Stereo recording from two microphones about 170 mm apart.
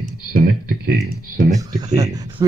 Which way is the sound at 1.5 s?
20° right (ahead or behind).